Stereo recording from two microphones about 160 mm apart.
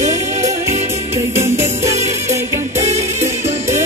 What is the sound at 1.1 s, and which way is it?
Music, 15° right (ahead or behind).